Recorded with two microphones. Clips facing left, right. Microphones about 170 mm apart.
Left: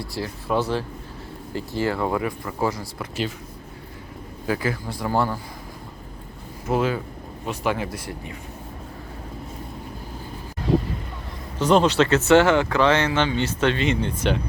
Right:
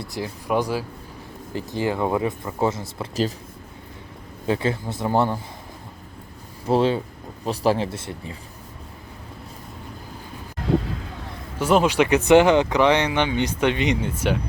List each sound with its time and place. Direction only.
0.0 s speech: 20° right (ahead or behind)
4.4 s speech: 25° right (ahead or behind)
6.7 s speech: 30° right (ahead or behind)
11.6 s speech: 10° right (ahead or behind)